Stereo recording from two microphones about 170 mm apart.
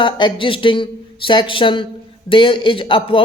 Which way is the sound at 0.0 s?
30° left (ahead or behind).